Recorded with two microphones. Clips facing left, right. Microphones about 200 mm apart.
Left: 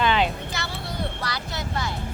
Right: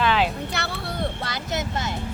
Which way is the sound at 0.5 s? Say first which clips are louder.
Right 3 dB; 65° right (ahead or behind).